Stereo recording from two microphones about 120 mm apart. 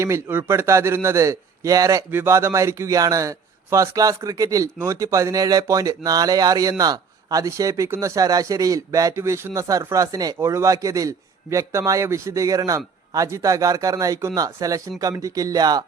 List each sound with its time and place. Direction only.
0.0 s a man's voice: 20° right (ahead or behind)
2.0 s a man's voice: 20° right (ahead or behind)